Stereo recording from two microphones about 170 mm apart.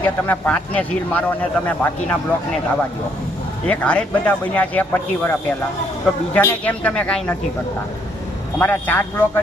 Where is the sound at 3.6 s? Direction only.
5° left (ahead or behind).